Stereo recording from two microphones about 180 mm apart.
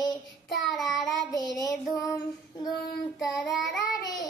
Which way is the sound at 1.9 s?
20° left (ahead or behind).